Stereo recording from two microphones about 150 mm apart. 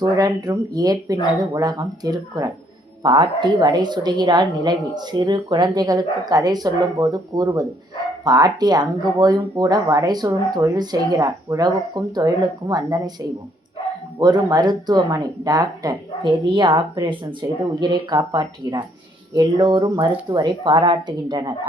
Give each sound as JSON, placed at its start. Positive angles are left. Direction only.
{"t": 0.0, "sound": "speech", "side_deg": -25}
{"t": 14.2, "sound": "speech", "side_deg": -25}